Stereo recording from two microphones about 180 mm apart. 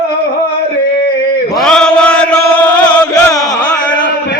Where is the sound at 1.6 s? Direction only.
5° left (ahead or behind).